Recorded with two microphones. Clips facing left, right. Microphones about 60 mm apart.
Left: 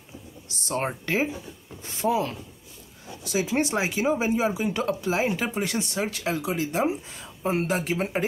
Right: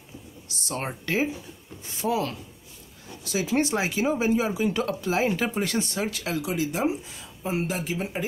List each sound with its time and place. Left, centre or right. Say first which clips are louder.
0.7 s speech: left 3 dB; left